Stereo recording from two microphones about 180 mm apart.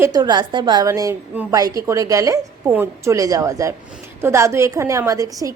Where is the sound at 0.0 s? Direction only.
20° right (ahead or behind).